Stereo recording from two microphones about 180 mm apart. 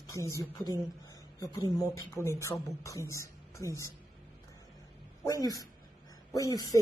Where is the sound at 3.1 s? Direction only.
15° left (ahead or behind).